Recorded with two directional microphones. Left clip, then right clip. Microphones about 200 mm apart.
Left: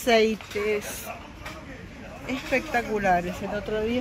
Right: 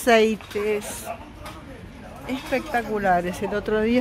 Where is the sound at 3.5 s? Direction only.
30° right (ahead or behind).